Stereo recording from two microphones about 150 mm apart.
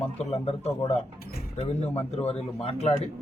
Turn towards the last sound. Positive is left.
turn(degrees=45)  # may be behind; listen again after turning